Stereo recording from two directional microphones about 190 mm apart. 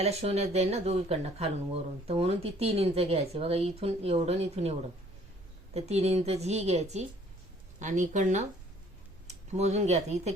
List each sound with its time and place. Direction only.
0.0 s speech: 35° right (ahead or behind)